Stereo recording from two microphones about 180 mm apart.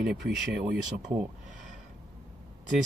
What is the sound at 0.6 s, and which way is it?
Speech, 55° right (ahead or behind).